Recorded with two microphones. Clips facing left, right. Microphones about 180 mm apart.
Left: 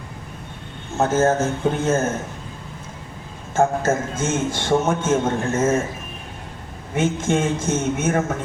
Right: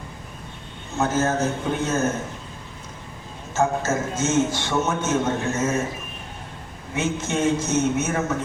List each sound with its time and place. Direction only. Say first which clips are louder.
0.9 s a man's voice: left 4 dB; 50° left (ahead or behind)
3.5 s a man's voice: left 3 dB; 50° left (ahead or behind)
6.9 s a man's voice: left 4 dB; 50° left (ahead or behind)